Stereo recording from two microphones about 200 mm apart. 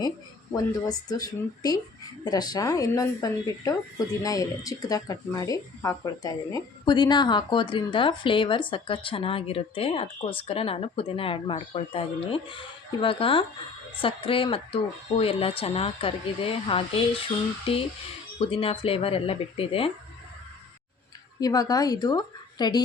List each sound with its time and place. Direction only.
0.5 s speech: 20° left (ahead or behind)
18.3 s speech: 25° left (ahead or behind)
21.4 s speech: 20° left (ahead or behind)